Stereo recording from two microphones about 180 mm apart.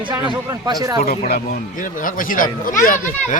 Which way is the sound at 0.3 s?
20° right (ahead or behind).